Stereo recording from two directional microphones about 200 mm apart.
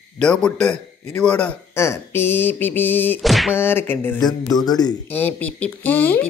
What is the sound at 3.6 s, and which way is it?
Speech, 10° left (ahead or behind).